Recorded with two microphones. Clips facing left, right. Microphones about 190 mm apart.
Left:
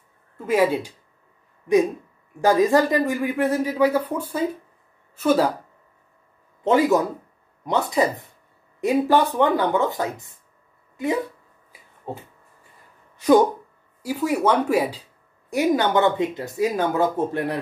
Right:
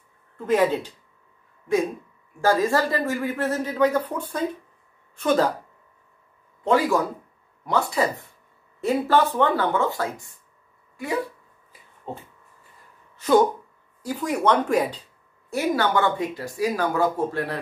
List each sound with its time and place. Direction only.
0.4 s speech: 10° left (ahead or behind)
2.4 s speech: 15° left (ahead or behind)
6.6 s speech: 20° left (ahead or behind)
12.1 s speech: 10° left (ahead or behind)
14.0 s speech: 10° left (ahead or behind)
15.5 s speech: 20° left (ahead or behind)